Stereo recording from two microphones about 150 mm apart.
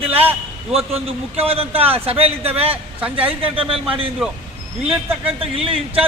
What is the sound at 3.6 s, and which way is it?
Speech, 35° right (ahead or behind).